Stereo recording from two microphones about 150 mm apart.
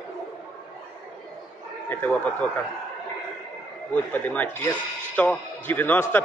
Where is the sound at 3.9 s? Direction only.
10° left (ahead or behind).